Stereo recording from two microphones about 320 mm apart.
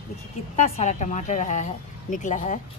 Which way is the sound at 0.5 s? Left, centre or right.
Centre.